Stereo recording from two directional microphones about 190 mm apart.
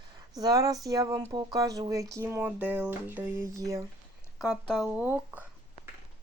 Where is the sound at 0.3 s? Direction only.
20° right (ahead or behind).